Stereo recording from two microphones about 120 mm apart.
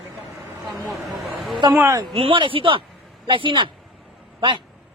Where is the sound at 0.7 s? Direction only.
Centre (ahead or behind).